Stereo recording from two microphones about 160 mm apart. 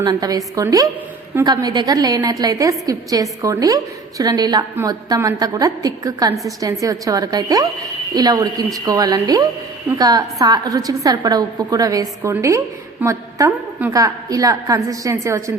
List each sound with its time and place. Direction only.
0.0 s a woman's voice: 25° right (ahead or behind)